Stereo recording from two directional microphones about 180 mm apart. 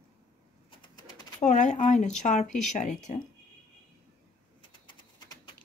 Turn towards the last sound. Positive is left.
turn(degrees=25)  # may be behind; listen again after turning